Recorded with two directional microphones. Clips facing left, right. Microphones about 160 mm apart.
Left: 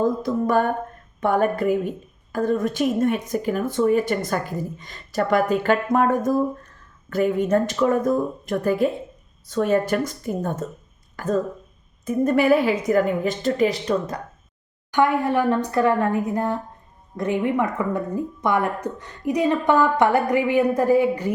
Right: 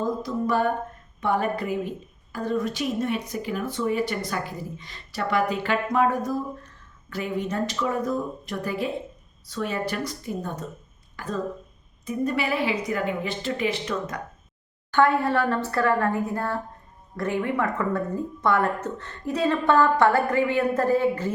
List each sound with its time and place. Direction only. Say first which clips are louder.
0.0 s speech: left 5 dB; 50° left (ahead or behind); by 14.2 s 35° left (ahead or behind)
14.8 s a woman's voice: left 1 dB; 15° left (ahead or behind)